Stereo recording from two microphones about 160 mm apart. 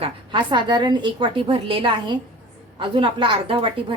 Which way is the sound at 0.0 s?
30° right (ahead or behind).